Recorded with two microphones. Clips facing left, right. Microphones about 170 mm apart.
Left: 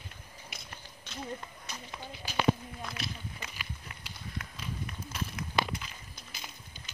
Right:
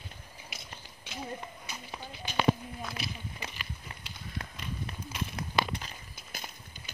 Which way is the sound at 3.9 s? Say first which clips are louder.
Right 2 dB; 30° right (ahead or behind).